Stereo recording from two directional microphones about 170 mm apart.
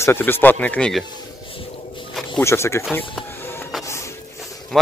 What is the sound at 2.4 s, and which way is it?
Speech, 15° left (ahead or behind).